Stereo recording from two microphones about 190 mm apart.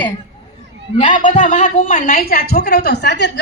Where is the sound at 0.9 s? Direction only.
40° left (ahead or behind).